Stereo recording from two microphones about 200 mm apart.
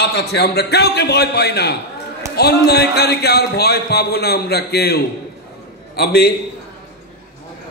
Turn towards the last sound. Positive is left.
turn(degrees=50)  # may be behind; listen again after turning